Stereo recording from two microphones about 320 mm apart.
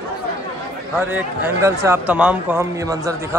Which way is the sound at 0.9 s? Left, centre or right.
Centre.